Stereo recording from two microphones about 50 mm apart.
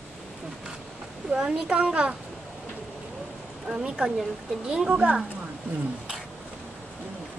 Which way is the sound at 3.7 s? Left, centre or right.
Centre.